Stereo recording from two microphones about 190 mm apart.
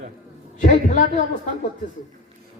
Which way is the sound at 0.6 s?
40° left (ahead or behind).